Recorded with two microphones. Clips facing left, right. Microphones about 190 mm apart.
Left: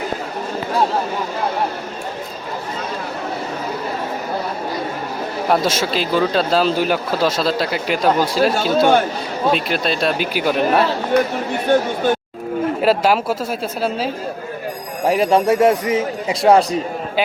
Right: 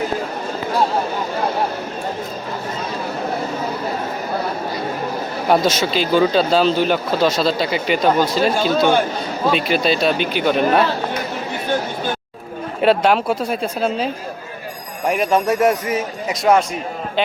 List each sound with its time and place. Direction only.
5.5 s speech: centre (ahead or behind)
12.8 s speech: centre (ahead or behind)
15.1 s speech: 30° left (ahead or behind)